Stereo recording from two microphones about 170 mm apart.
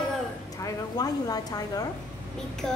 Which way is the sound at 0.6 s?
20° left (ahead or behind).